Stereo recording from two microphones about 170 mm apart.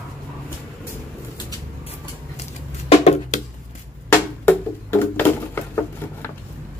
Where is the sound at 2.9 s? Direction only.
40° left (ahead or behind).